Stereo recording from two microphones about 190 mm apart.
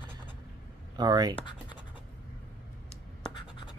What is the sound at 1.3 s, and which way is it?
Scratch, 25° left (ahead or behind).